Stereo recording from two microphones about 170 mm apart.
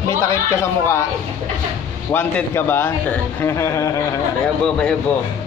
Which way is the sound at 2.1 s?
10° left (ahead or behind).